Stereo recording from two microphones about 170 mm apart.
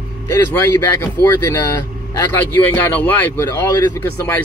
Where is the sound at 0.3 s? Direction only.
15° left (ahead or behind).